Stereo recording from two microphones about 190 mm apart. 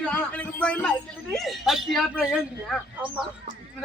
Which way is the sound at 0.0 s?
5° left (ahead or behind).